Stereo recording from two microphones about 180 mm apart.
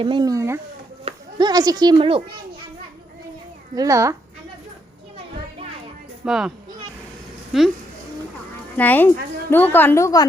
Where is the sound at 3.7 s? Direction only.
20° right (ahead or behind).